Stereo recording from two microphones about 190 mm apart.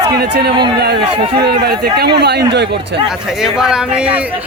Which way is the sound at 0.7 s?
60° right (ahead or behind).